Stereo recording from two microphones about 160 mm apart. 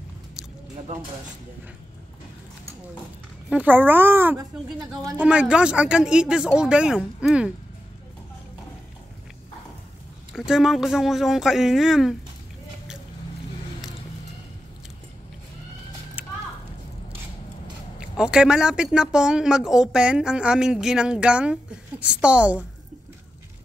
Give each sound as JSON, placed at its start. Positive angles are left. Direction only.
{"t": 3.4, "sound": "a child's voice", "side_deg": -10}
{"t": 4.4, "sound": "speech", "side_deg": -25}
{"t": 5.1, "sound": "speech", "side_deg": -10}
{"t": 10.3, "sound": "speech", "side_deg": 0}
{"t": 16.2, "sound": "a sound", "side_deg": -10}
{"t": 17.9, "sound": "a child's voice", "side_deg": -5}